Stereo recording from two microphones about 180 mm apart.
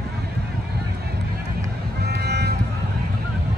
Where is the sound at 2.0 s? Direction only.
65° right (ahead or behind).